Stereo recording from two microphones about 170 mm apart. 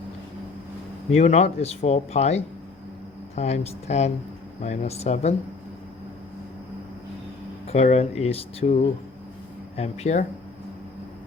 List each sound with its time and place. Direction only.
1.1 s speech: 40° left (ahead or behind)
7.7 s speech: 40° left (ahead or behind)